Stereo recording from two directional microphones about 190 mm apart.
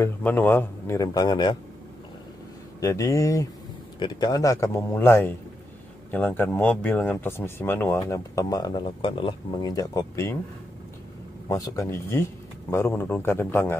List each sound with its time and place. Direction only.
0.0 s speech: 10° left (ahead or behind)
2.8 s speech: 15° left (ahead or behind)
11.4 s speech: 15° left (ahead or behind)